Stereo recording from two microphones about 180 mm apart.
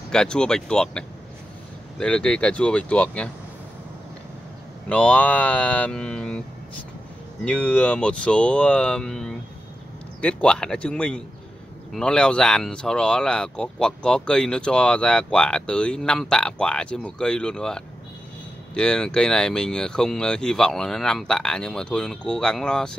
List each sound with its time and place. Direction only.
0.1 s speech: 5° left (ahead or behind)
4.8 s speech: 5° left (ahead or behind)
7.4 s speech: 5° left (ahead or behind)